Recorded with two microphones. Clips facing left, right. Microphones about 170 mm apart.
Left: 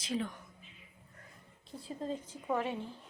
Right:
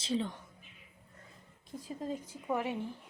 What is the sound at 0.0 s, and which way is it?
Speech, 30° right (ahead or behind).